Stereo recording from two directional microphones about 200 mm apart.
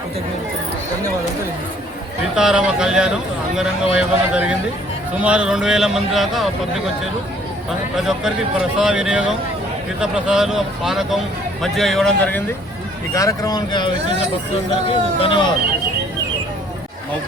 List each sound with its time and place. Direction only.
2.3 s a man's voice: 5° right (ahead or behind)
7.9 s a man's voice: centre (ahead or behind)
13.1 s speech: 15° left (ahead or behind)